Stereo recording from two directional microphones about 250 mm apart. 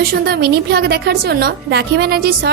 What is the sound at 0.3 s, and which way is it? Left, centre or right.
A woman's voice, right.